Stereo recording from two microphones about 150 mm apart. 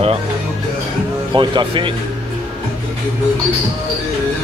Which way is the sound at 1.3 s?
35° right (ahead or behind).